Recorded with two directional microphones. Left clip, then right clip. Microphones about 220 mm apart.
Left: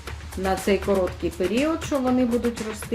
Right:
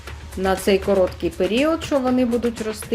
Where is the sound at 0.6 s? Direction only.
30° right (ahead or behind).